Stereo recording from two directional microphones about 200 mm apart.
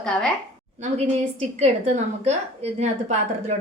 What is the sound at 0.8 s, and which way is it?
A woman's voice, 35° right (ahead or behind).